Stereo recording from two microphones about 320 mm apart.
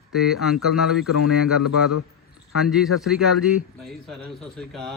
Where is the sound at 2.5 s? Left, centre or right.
Centre.